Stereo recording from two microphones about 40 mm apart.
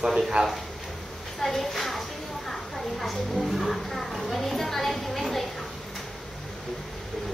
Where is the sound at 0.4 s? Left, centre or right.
Right.